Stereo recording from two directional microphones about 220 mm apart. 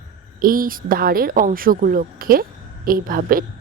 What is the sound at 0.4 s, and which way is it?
Speech, 40° right (ahead or behind).